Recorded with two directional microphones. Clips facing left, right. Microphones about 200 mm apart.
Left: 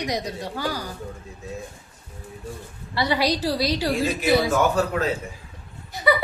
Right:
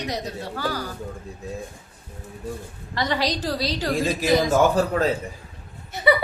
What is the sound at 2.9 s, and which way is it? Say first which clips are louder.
A woman's voice: left 2 dB; 10° left (ahead or behind).